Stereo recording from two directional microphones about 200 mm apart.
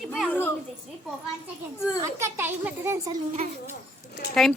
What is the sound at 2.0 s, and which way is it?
A child's voice, 15° right (ahead or behind).